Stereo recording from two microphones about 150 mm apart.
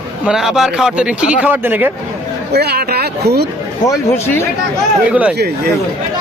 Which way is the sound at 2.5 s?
90° right.